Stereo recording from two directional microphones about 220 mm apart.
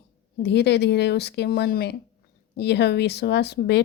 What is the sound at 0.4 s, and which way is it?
Speech, 50° left (ahead or behind).